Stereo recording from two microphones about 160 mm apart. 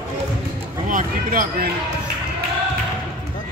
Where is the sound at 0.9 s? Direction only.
60° right (ahead or behind).